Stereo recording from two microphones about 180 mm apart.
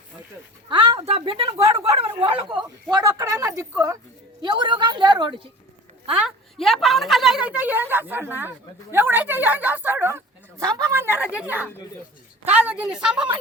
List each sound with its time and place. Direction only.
0.7 s a woman's voice: 25° right (ahead or behind)
6.2 s a woman's voice: centre (ahead or behind)